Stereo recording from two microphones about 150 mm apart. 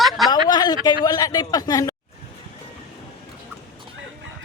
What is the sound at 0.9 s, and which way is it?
A man's voice, 25° left (ahead or behind).